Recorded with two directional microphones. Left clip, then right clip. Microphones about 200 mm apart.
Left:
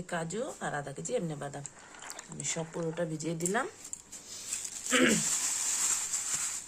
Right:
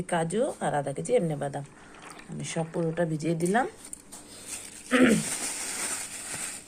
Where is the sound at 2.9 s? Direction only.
5° right (ahead or behind).